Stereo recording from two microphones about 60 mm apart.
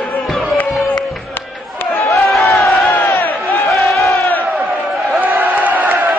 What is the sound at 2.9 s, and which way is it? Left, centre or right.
Crowd, left.